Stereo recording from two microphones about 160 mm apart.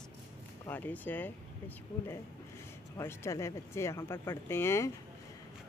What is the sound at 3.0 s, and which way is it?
Speech, 15° left (ahead or behind).